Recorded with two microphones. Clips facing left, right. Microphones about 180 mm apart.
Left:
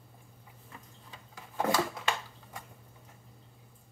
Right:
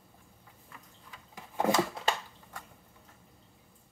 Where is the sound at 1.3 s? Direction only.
20° right (ahead or behind).